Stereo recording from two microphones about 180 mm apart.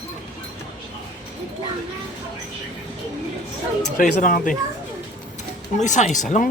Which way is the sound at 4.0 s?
45° left (ahead or behind).